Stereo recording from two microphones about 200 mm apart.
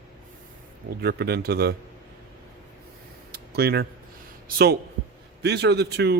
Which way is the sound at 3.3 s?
55° right (ahead or behind).